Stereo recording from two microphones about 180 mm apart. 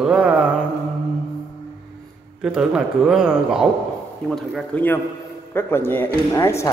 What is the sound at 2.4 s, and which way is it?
A man's voice, 5° right (ahead or behind).